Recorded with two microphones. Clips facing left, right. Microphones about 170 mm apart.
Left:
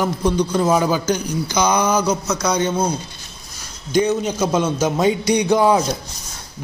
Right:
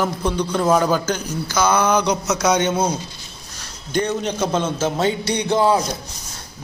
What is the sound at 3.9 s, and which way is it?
A man's voice, 5° left (ahead or behind).